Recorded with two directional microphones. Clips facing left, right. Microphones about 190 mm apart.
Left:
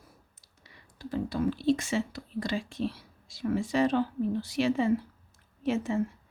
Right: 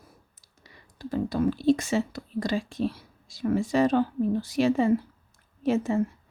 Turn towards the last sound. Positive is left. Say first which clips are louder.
# right 4 dB
turn(degrees=-40)  # may be behind; listen again after turning